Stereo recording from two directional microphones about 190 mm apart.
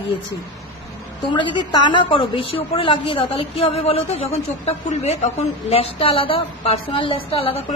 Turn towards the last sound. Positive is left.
turn(degrees=30)  # may be behind; listen again after turning